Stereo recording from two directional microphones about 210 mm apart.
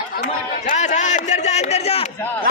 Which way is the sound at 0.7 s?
35° left (ahead or behind).